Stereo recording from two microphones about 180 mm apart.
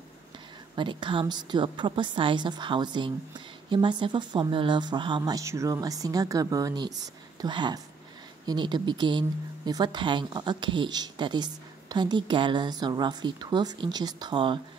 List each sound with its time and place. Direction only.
0.7 s a woman's voice: 25° right (ahead or behind)